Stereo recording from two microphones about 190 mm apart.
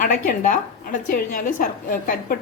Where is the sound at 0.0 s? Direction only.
45° left (ahead or behind).